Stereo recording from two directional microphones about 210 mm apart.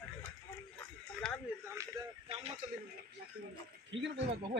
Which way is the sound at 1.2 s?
5° left (ahead or behind).